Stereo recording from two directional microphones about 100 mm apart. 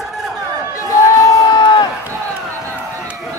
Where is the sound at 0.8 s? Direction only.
35° left (ahead or behind).